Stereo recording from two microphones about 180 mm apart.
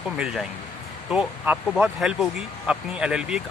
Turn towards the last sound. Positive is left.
turn(degrees=-5)  # may be behind; listen again after turning